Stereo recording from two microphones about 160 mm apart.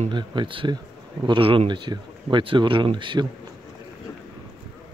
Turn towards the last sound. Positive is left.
turn(degrees=-30)  # may be behind; listen again after turning